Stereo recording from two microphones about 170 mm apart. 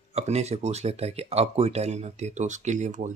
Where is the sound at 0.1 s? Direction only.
40° right (ahead or behind).